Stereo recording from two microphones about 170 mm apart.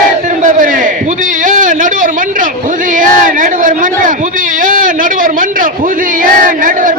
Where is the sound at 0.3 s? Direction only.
50° right (ahead or behind).